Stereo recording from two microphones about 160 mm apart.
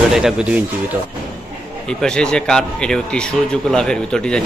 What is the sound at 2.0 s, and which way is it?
Speech, 5° left (ahead or behind).